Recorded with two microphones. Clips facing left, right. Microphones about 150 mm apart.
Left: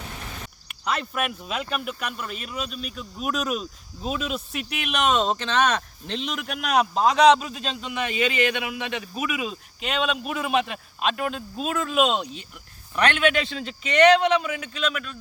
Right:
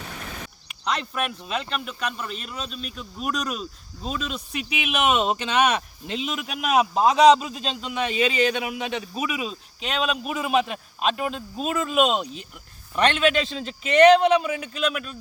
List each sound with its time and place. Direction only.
0.7 s speech: 5° left (ahead or behind)
8.1 s speech: 35° right (ahead or behind)
9.4 s speech: centre (ahead or behind)
13.6 s speech: 35° right (ahead or behind)
14.3 s a man's voice: 10° right (ahead or behind)